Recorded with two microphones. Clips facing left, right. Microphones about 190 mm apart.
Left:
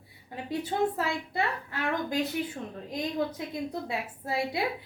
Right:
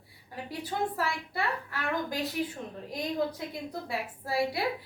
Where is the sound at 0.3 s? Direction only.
20° left (ahead or behind).